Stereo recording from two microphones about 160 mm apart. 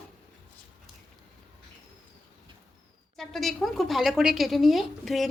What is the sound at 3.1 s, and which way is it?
A woman's voice, centre (ahead or behind).